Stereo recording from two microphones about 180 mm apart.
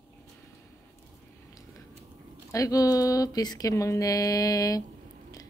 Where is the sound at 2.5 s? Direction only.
20° left (ahead or behind).